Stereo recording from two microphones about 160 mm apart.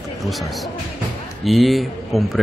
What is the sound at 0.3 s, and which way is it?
Speech, centre (ahead or behind).